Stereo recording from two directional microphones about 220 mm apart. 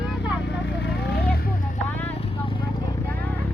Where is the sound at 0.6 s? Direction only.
50° left (ahead or behind).